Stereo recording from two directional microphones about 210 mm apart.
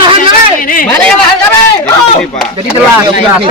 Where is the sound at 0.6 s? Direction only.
40° left (ahead or behind).